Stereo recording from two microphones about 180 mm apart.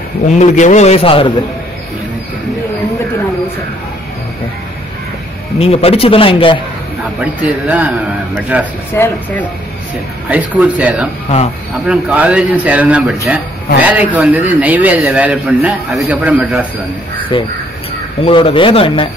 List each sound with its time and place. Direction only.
0.4 s speech: 40° left (ahead or behind)
5.6 s speech: 35° left (ahead or behind)
7.2 s a man's voice: 10° right (ahead or behind)
8.9 s speech: 10° left (ahead or behind)
10.3 s a man's voice: 10° right (ahead or behind)
17.3 s speech: 25° left (ahead or behind)